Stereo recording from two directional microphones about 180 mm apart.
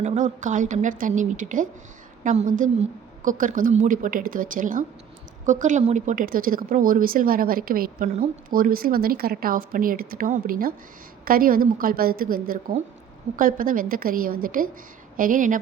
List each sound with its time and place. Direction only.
0.0 s a woman's voice: 40° right (ahead or behind)